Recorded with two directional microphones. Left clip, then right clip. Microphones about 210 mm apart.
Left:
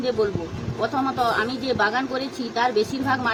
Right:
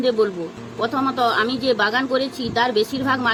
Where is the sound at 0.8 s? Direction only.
15° right (ahead or behind).